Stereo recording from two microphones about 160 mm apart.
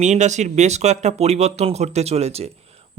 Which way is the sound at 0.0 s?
45° right (ahead or behind).